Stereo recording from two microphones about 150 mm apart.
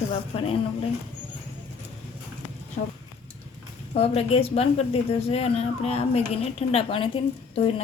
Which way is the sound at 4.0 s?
40° left (ahead or behind).